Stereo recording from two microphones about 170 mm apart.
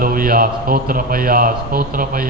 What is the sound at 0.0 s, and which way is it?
A man's voice, 55° right (ahead or behind).